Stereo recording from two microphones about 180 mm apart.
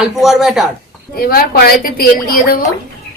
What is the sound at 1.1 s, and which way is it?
A woman's voice, 55° left (ahead or behind).